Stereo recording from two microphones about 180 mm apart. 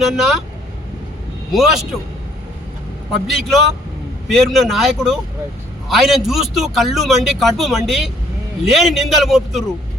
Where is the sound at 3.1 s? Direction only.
Centre (ahead or behind).